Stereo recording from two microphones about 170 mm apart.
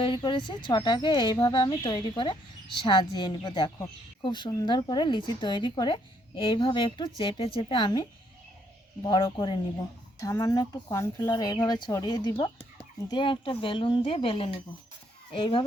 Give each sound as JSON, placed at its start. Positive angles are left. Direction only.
{"t": 0.0, "sound": "speech", "side_deg": 25}
{"t": 9.0, "sound": "speech", "side_deg": 25}